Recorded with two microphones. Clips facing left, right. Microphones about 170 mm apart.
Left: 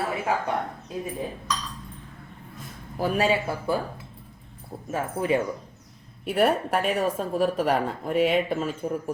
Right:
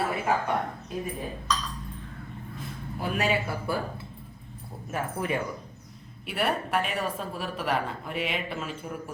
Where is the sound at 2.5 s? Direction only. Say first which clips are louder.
Left 5 dB; 35° left (ahead or behind).